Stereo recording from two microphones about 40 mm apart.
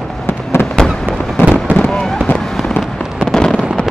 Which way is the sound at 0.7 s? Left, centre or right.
Centre.